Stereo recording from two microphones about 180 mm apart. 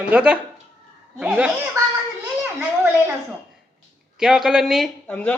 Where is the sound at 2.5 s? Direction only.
10° right (ahead or behind).